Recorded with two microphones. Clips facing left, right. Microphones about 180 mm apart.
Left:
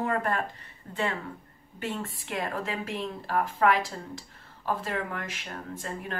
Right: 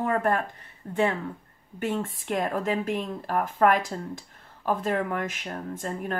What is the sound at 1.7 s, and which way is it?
Speech, 50° right (ahead or behind).